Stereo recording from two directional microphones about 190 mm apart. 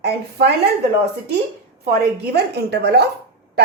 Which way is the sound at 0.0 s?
55° right (ahead or behind).